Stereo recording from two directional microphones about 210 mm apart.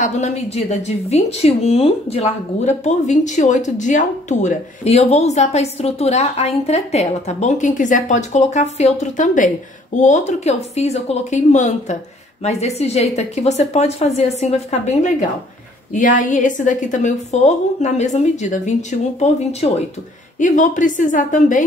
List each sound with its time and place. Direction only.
0.0 s speech: 35° left (ahead or behind)